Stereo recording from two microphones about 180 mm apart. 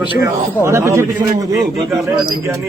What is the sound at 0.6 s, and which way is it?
Speech, 15° right (ahead or behind).